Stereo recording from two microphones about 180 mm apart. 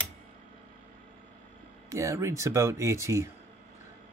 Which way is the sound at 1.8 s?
15° right (ahead or behind).